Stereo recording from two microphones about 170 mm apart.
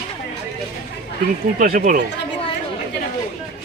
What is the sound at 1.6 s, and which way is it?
Speech, 55° right (ahead or behind).